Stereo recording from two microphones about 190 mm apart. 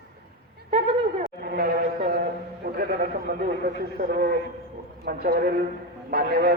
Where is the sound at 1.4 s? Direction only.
55° right (ahead or behind).